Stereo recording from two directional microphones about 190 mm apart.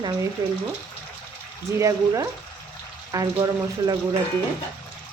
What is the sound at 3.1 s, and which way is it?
Speech, 20° right (ahead or behind).